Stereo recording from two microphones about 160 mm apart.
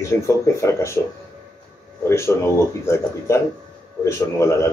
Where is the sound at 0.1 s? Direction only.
15° left (ahead or behind).